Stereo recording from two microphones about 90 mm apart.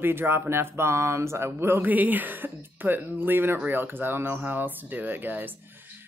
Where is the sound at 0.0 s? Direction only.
25° right (ahead or behind).